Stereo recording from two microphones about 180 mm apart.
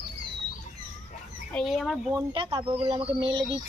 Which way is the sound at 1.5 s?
Centre (ahead or behind).